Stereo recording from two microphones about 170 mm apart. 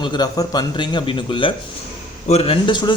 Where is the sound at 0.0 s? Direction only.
25° left (ahead or behind).